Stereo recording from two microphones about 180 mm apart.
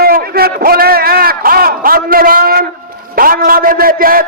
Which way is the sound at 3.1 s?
55° right (ahead or behind).